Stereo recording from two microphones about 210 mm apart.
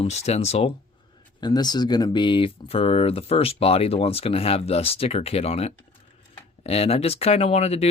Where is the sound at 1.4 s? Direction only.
20° left (ahead or behind).